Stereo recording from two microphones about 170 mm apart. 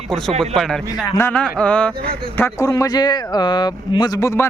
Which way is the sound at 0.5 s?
Centre (ahead or behind).